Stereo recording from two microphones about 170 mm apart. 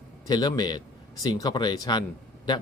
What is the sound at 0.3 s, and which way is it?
Speech, 25° left (ahead or behind).